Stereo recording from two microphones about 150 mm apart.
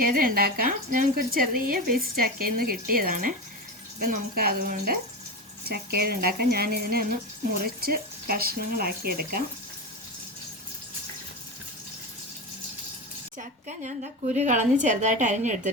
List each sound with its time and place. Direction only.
0.0 s speech: 70° right (ahead or behind); by 9.4 s 90° right
13.7 s a woman's voice: 55° right (ahead or behind)